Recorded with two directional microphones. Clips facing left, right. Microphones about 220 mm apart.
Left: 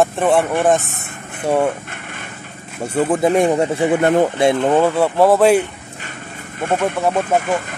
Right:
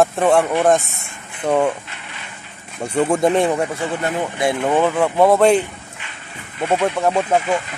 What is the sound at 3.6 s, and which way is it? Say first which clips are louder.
Speech: left 6 dB; 20° left (ahead or behind).